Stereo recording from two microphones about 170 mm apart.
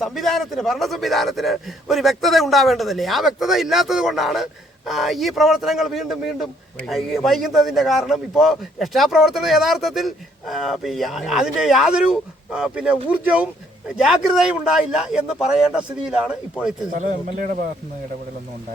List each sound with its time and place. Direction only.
0.0 s a man's voice: centre (ahead or behind)
16.9 s a man's voice: 45° right (ahead or behind)